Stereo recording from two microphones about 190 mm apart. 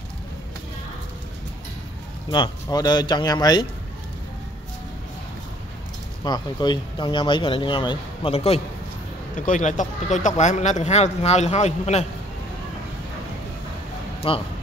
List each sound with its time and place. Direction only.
2.3 s speech: 20° left (ahead or behind)
6.2 s speech: 20° left (ahead or behind)
9.5 s speech: 40° left (ahead or behind)
14.2 s speech: 30° left (ahead or behind)